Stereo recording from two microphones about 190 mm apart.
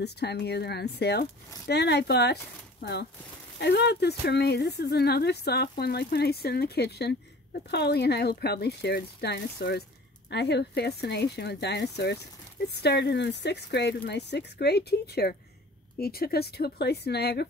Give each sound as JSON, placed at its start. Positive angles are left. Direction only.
{"t": 0.0, "sound": "speech", "side_deg": 60}